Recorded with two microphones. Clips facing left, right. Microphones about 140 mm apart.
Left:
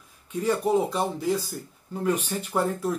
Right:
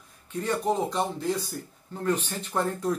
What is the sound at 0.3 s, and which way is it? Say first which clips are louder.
Speech: left 4 dB; 10° left (ahead or behind).